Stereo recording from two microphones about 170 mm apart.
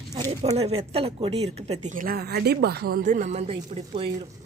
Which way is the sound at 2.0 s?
65° right (ahead or behind).